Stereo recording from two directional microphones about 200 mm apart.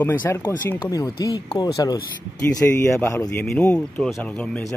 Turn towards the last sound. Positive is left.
turn(degrees=5)  # may be behind; listen again after turning